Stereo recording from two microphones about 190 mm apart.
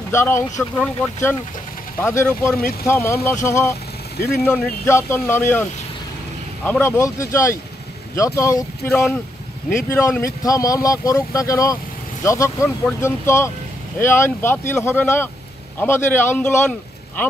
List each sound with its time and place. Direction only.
0.1 s speech: 15° left (ahead or behind)
4.2 s speech: 55° left (ahead or behind)
4.5 s speech: 10° left (ahead or behind)